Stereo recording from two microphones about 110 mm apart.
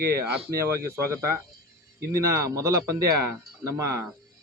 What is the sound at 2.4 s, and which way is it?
Speech, 30° right (ahead or behind).